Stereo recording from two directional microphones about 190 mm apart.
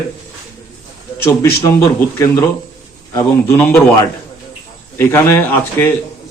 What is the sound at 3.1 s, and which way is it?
A man's voice, 10° left (ahead or behind).